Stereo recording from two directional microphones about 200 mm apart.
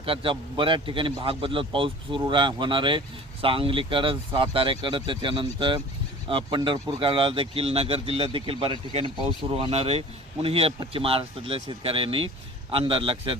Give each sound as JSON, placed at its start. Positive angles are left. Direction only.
{"t": 0.0, "sound": "speech", "side_deg": -25}